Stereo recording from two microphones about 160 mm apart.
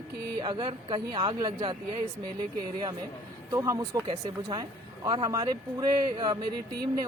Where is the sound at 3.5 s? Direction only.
20° right (ahead or behind).